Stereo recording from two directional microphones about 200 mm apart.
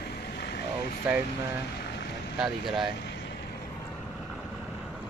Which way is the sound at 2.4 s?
Centre (ahead or behind).